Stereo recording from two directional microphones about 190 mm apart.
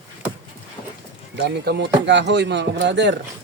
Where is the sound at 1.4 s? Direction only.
55° right (ahead or behind).